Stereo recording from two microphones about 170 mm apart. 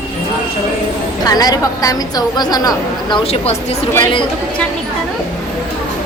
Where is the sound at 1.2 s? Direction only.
20° left (ahead or behind); by 3.8 s 35° left (ahead or behind).